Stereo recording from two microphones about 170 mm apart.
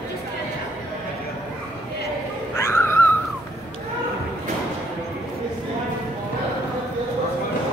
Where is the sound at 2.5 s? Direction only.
15° left (ahead or behind).